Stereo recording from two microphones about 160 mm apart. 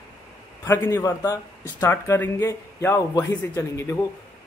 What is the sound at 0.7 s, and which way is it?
A man's voice, 15° left (ahead or behind).